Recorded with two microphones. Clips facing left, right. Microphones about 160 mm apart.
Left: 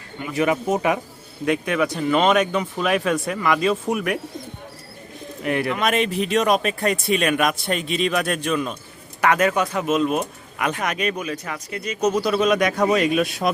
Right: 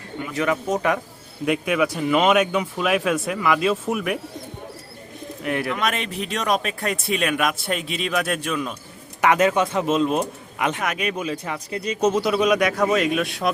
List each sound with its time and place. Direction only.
0.3 s speech: 10° left (ahead or behind)
1.5 s speech: 5° right (ahead or behind)
5.4 s speech: centre (ahead or behind)
9.2 s speech: 20° right (ahead or behind)
10.8 s speech: 5° right (ahead or behind)
11.2 s speech: 25° right (ahead or behind)
12.4 s speech: 5° right (ahead or behind)